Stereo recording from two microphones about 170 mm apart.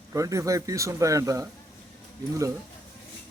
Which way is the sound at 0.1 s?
20° right (ahead or behind).